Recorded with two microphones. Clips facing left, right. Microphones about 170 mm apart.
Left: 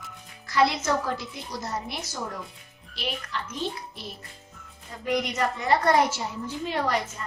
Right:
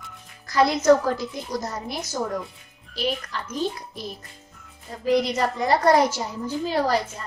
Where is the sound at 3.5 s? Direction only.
40° right (ahead or behind).